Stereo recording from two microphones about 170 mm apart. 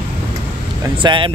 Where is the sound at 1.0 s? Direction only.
30° right (ahead or behind).